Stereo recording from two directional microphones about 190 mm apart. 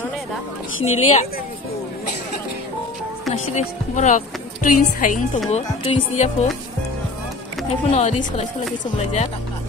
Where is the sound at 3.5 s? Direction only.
35° left (ahead or behind).